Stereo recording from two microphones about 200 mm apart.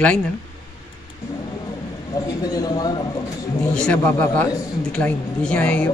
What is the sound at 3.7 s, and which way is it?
A man's voice, 5° left (ahead or behind).